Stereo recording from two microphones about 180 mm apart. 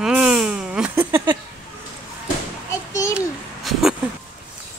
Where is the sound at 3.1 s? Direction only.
Centre (ahead or behind).